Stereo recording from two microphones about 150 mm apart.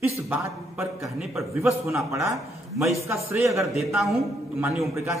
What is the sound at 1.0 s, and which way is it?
Speech, centre (ahead or behind).